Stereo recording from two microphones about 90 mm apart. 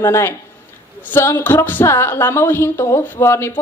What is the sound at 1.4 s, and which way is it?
A woman's voice, 25° left (ahead or behind).